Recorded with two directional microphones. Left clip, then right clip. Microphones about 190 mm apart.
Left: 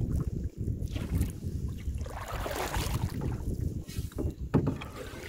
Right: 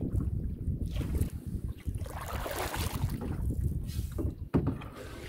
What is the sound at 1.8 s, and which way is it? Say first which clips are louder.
Boat: right 1 dB; 40° right (ahead or behind).